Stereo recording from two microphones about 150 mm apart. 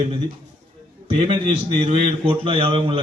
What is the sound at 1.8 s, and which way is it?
A man's voice, 35° right (ahead or behind).